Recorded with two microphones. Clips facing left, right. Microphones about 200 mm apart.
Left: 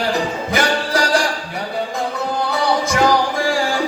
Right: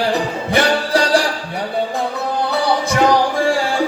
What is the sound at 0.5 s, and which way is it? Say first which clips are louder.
Music: right 3 dB; 30° right (ahead or behind).